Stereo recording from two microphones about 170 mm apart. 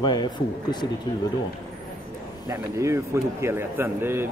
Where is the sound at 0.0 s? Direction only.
25° left (ahead or behind).